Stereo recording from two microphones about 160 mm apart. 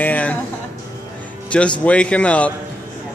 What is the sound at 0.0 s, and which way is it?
Music, 10° left (ahead or behind).